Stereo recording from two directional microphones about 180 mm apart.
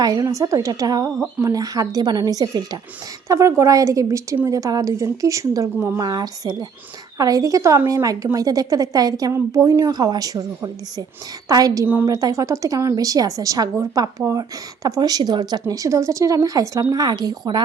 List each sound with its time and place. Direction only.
0.0 s a woman's voice: 20° right (ahead or behind)